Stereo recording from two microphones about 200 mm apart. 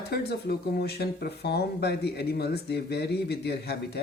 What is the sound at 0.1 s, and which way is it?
Speech, 55° left (ahead or behind).